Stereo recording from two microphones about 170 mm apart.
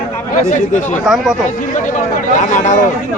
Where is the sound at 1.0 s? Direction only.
Centre (ahead or behind).